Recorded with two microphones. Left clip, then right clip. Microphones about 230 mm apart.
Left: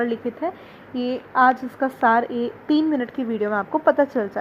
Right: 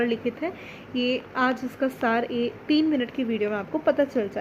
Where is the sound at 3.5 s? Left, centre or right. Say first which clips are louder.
Left 7 dB; left.